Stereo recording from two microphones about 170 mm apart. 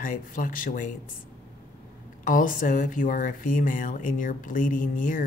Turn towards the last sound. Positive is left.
turn(degrees=50)  # may be behind; listen again after turning